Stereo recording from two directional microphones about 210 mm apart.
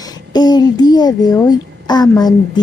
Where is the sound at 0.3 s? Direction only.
20° left (ahead or behind).